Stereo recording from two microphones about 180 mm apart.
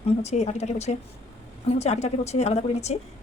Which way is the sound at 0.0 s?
40° left (ahead or behind).